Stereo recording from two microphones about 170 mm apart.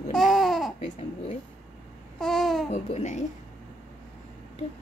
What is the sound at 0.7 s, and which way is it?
Babbling, 40° left (ahead or behind).